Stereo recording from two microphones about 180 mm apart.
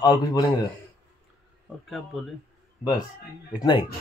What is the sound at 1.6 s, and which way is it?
Speech, centre (ahead or behind).